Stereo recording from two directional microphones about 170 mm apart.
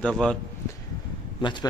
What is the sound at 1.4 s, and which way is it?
Speech, 25° left (ahead or behind).